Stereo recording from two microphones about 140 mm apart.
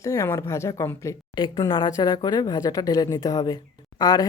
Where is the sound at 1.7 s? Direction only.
35° left (ahead or behind).